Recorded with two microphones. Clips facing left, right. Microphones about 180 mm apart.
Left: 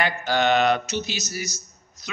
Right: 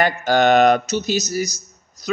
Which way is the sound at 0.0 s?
45° right (ahead or behind).